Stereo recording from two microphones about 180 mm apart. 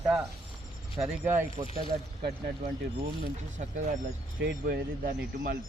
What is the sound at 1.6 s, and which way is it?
Speech, 25° right (ahead or behind).